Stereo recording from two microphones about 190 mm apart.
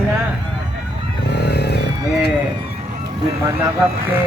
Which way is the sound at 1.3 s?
60° left (ahead or behind).